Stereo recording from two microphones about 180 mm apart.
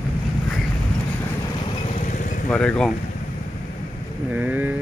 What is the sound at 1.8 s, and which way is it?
Vehicle, 40° left (ahead or behind).